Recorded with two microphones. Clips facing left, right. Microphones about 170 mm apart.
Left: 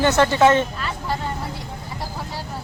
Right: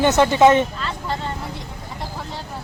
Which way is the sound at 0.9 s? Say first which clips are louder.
Even; 5° left (ahead or behind).